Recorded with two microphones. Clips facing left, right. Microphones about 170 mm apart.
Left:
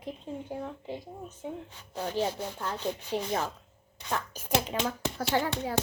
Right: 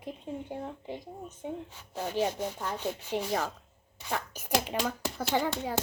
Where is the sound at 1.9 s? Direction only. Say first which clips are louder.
Even; 10° right (ahead or behind).